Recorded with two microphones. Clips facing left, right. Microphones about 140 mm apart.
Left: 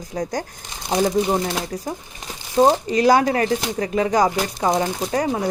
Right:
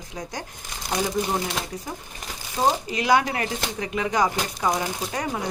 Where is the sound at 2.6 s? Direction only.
35° left (ahead or behind).